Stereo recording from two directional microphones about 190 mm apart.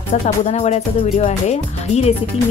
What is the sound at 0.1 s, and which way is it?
Speech, 35° left (ahead or behind).